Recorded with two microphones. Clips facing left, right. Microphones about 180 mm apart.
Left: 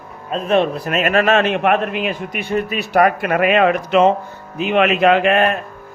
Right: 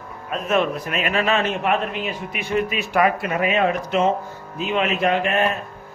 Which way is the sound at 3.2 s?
65° left (ahead or behind).